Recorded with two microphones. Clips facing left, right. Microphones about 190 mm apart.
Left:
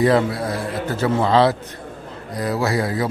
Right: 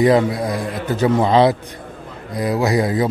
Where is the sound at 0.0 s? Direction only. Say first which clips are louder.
Right 3 dB; 15° right (ahead or behind).